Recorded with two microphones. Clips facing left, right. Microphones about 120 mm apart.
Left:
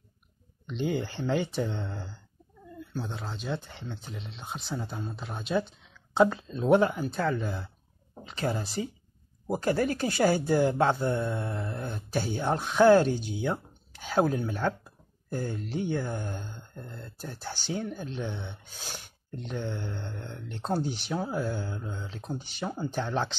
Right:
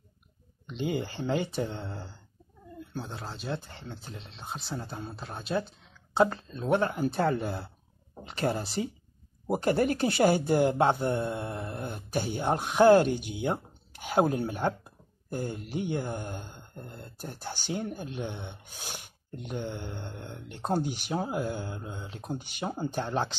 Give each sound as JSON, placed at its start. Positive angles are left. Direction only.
{"t": 0.7, "sound": "speech", "side_deg": -5}
{"t": 6.5, "sound": "speech", "side_deg": 20}
{"t": 7.2, "sound": "speech", "side_deg": -30}
{"t": 9.5, "sound": "speech", "side_deg": -20}